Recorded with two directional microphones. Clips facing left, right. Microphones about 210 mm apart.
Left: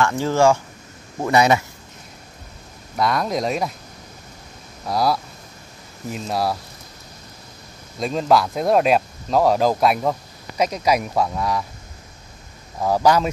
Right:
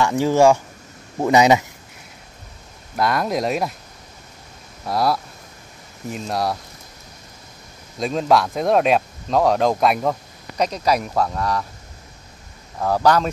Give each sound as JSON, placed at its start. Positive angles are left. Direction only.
{"t": 0.0, "sound": "speech", "side_deg": -15}
{"t": 3.0, "sound": "speech", "side_deg": 0}
{"t": 4.8, "sound": "speech", "side_deg": 0}
{"t": 8.0, "sound": "speech", "side_deg": 0}
{"t": 12.7, "sound": "speech", "side_deg": 10}